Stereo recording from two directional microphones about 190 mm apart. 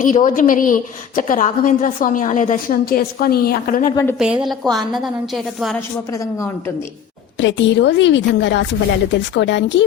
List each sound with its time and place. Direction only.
0.0 s a woman's voice: 45° left (ahead or behind)
4.2 s a woman's voice: 5° right (ahead or behind)
6.1 s a woman's voice: 15° left (ahead or behind)
7.3 s a woman's voice: 70° left (ahead or behind)